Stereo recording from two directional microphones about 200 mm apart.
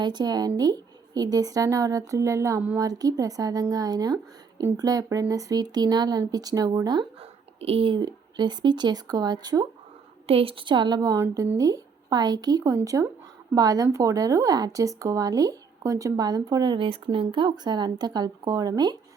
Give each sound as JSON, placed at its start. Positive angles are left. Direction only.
{"t": 0.0, "sound": "a woman's voice", "side_deg": -20}